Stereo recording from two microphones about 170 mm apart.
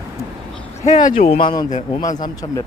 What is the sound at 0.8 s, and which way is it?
Speech, 45° left (ahead or behind).